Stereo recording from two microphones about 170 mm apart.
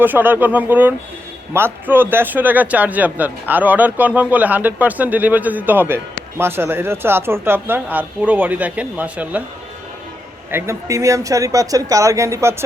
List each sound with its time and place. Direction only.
0.0 s speech: 10° right (ahead or behind)
10.5 s speech: 15° right (ahead or behind)